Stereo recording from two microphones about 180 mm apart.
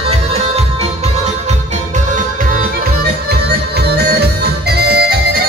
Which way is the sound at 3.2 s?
60° right (ahead or behind).